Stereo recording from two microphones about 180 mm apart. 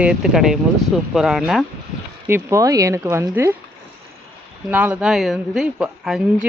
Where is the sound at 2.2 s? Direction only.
15° right (ahead or behind).